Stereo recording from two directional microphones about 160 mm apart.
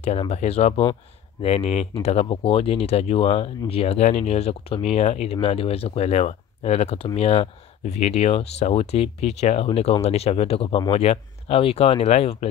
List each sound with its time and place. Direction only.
0.3 s speech: 40° left (ahead or behind)